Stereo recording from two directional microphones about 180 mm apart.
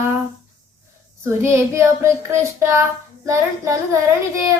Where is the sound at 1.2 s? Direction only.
15° right (ahead or behind).